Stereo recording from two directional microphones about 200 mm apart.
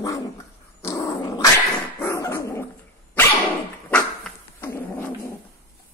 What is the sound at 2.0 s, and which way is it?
Dog, 15° left (ahead or behind).